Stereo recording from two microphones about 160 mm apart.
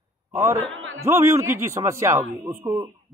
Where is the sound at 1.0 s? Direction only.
20° right (ahead or behind).